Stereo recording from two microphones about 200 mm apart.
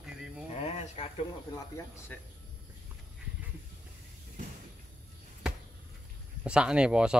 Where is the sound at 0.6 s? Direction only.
30° left (ahead or behind).